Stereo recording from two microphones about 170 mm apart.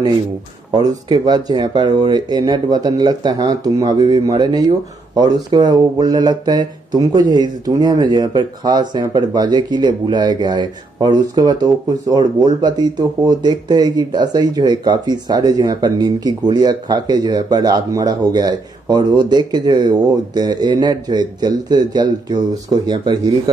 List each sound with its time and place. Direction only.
0.7 s speech: 25° right (ahead or behind)